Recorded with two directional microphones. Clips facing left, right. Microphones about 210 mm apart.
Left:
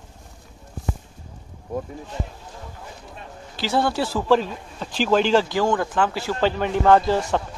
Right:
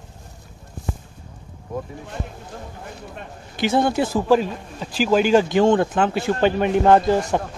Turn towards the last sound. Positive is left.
turn(degrees=-15)  # may be behind; listen again after turning